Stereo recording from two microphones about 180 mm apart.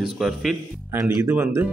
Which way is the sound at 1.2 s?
10° right (ahead or behind).